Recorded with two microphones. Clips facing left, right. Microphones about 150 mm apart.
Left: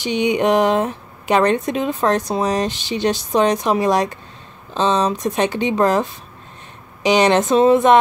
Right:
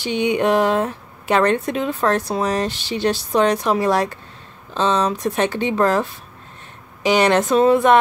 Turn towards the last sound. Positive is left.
turn(degrees=20)  # may be behind; listen again after turning